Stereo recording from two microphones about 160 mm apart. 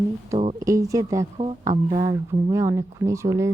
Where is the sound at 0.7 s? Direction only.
20° right (ahead or behind).